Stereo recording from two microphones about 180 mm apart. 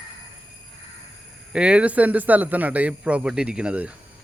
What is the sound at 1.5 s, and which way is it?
Speech, 5° right (ahead or behind).